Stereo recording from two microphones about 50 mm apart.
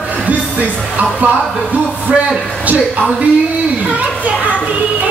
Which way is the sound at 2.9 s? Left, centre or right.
Right.